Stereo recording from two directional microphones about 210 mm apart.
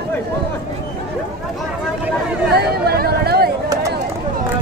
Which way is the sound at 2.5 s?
50° right (ahead or behind).